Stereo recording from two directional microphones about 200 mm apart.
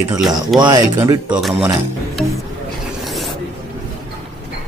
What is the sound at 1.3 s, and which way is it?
Speech, 5° right (ahead or behind).